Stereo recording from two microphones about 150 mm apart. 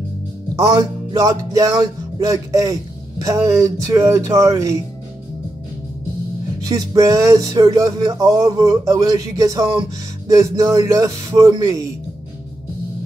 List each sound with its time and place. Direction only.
0.7 s speech: 20° right (ahead or behind)
6.6 s speech: 25° right (ahead or behind)